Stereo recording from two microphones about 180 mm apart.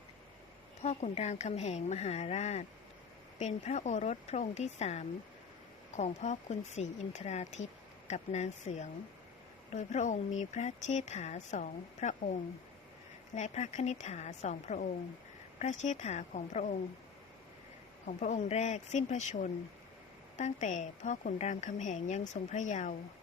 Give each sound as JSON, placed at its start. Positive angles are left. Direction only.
{"t": 0.8, "sound": "speech", "side_deg": 40}
{"t": 18.0, "sound": "a woman's voice", "side_deg": 40}